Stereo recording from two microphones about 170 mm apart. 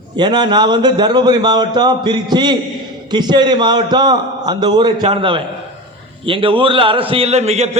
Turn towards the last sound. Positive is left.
turn(degrees=-40)  # may be behind; listen again after turning